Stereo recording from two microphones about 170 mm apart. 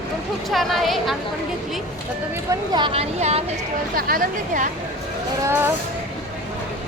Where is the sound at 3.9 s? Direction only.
60° right (ahead or behind).